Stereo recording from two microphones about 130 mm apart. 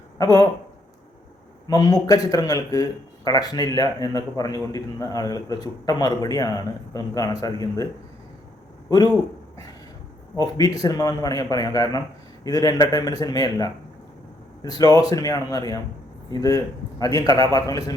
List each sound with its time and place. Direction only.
0.2 s speech: 30° left (ahead or behind)
1.6 s speech: 30° left (ahead or behind)
10.3 s speech: 30° left (ahead or behind)